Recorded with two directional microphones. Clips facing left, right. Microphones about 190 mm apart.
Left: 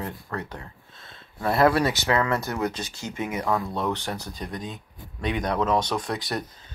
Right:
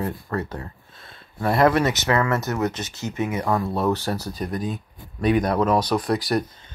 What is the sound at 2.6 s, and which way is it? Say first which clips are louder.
Speech: right 3 dB; 25° right (ahead or behind).